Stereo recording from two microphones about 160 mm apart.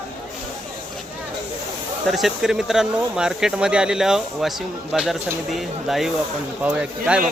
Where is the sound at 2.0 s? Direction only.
Centre (ahead or behind).